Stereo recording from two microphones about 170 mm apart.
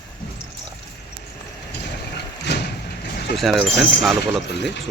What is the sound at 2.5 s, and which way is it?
Horse, 90° left.